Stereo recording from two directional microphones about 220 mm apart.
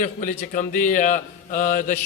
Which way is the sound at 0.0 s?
35° left (ahead or behind).